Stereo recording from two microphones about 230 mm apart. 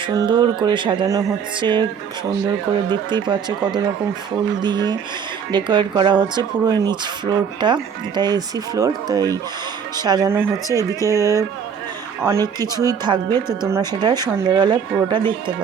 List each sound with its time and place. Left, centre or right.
0.1 s speech: centre
2.9 s speech: centre